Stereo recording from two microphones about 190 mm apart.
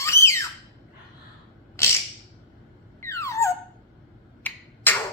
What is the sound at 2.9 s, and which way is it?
Squeak, 15° left (ahead or behind).